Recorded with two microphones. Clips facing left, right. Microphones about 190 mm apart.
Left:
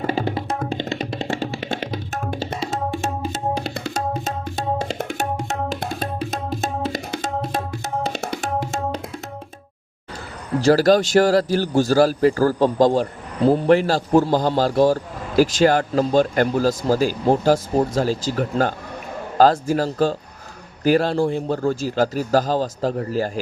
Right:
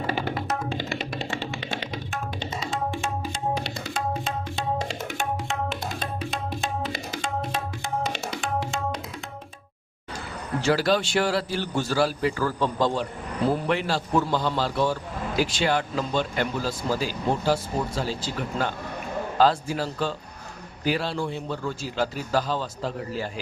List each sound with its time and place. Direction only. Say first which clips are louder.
0.3 s music: left 4 dB; 30° left (ahead or behind)
2.3 s tabla: left 6 dB; 50° left (ahead or behind)
3.9 s tabla: left 1 dB; 40° left (ahead or behind)
5.1 s music: left 1 dB; 40° left (ahead or behind)
10.6 s a man's voice: left 8 dB; 40° left (ahead or behind)